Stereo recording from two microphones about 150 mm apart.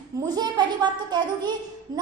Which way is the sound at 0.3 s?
30° right (ahead or behind).